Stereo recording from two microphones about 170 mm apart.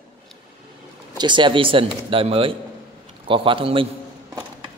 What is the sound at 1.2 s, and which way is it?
Speech, 30° right (ahead or behind).